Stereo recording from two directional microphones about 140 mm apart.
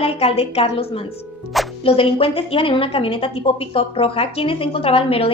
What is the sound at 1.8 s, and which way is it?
A woman's voice, 40° left (ahead or behind).